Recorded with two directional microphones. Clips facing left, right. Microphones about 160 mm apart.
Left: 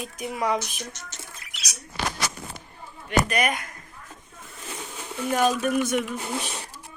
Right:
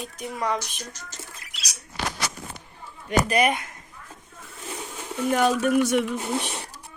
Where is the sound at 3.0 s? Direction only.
30° right (ahead or behind).